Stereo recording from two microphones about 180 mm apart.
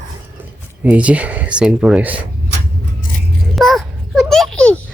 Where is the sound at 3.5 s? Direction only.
Centre (ahead or behind).